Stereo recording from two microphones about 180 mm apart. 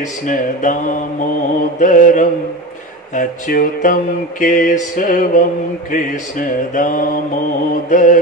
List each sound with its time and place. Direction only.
0.3 s mantra: 45° left (ahead or behind)